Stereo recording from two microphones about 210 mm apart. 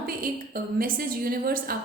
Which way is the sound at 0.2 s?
40° right (ahead or behind).